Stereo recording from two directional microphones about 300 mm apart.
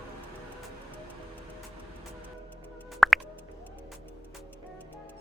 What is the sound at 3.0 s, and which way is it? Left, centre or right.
Music, centre.